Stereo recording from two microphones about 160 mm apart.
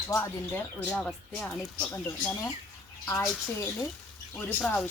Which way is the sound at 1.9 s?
20° left (ahead or behind).